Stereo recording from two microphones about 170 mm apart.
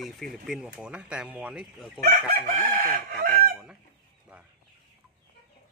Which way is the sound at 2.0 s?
60° right (ahead or behind).